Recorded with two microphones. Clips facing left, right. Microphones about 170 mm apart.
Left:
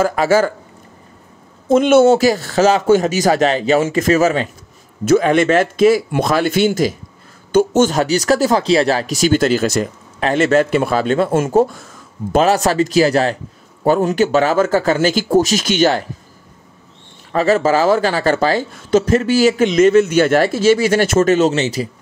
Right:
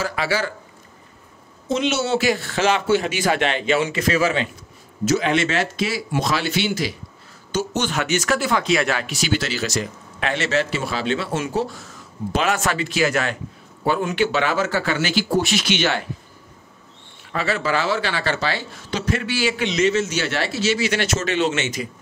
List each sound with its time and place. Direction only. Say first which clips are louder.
0.0 s speech: left 10 dB; 45° left (ahead or behind)
1.7 s speech: left 11 dB; 50° left (ahead or behind)
12.3 s speech: left 8 dB; 40° left (ahead or behind)
17.3 s speech: left 9 dB; 40° left (ahead or behind)